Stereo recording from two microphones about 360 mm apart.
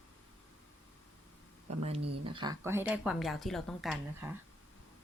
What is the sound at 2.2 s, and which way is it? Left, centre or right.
A woman's voice, centre.